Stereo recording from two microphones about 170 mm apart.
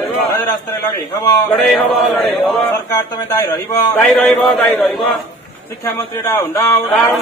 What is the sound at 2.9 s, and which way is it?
Speech, 20° left (ahead or behind).